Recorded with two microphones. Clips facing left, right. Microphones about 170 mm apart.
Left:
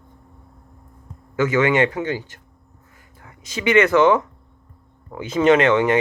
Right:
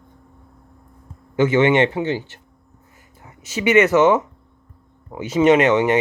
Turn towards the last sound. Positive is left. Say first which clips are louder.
# right 1 dB
turn(degrees=-20)  # may be behind; listen again after turning